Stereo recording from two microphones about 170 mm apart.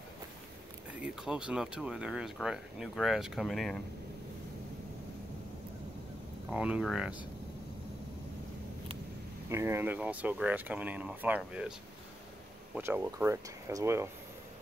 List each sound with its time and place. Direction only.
0.9 s speech: 5° right (ahead or behind)
6.5 s speech: 5° right (ahead or behind)
9.5 s speech: 15° right (ahead or behind)
12.7 s speech: 10° right (ahead or behind)